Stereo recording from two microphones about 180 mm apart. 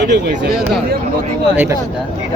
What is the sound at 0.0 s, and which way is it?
Speech, 70° right (ahead or behind).